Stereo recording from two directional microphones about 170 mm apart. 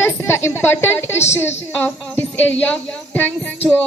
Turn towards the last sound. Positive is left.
turn(degrees=10)  # may be behind; listen again after turning